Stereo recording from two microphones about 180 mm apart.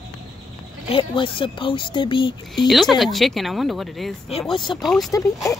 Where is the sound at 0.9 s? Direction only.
30° left (ahead or behind).